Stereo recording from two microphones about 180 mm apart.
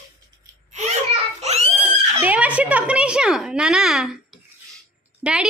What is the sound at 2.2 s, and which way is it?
A woman's voice, 10° right (ahead or behind).